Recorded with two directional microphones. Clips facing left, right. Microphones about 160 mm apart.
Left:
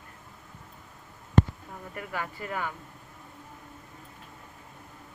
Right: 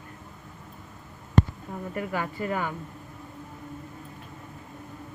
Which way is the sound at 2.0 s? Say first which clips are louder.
Right 5 dB; 10° right (ahead or behind).